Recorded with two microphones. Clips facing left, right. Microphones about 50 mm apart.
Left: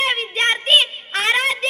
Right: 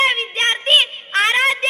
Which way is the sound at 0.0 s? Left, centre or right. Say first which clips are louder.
Right 2 dB; right.